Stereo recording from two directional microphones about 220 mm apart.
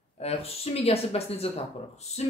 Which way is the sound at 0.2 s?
25° left (ahead or behind).